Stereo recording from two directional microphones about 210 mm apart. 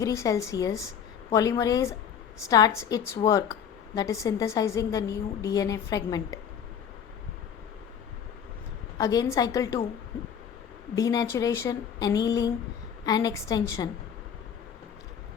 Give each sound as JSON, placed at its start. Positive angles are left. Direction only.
{"t": 0.0, "sound": "a woman's voice", "side_deg": 15}
{"t": 9.0, "sound": "a woman's voice", "side_deg": 15}
{"t": 10.9, "sound": "a woman's voice", "side_deg": 15}